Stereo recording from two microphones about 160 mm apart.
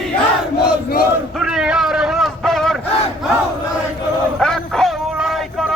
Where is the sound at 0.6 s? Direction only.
75° left (ahead or behind).